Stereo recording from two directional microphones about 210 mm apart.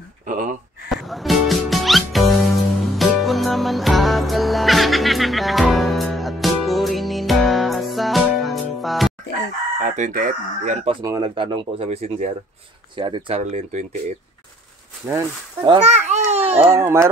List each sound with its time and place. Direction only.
0.3 s gasp: 40° right (ahead or behind)
0.8 s music: centre (ahead or behind)
9.8 s speech: 40° right (ahead or behind); by 13.4 s 25° right (ahead or behind)
13.4 s speech: 35° right (ahead or behind)
15.0 s speech: 20° right (ahead or behind)
16.3 s babbling: 30° right (ahead or behind)
16.7 s speech: 15° right (ahead or behind)